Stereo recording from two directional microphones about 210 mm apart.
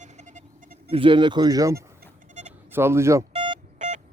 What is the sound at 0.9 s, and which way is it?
Speech, 25° right (ahead or behind).